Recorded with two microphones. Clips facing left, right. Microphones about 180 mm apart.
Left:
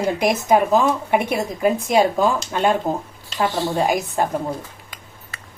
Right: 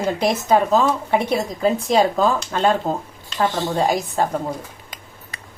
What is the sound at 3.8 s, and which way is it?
Speech, 15° left (ahead or behind).